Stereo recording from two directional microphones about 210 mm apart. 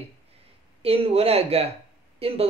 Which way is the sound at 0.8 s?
25° right (ahead or behind).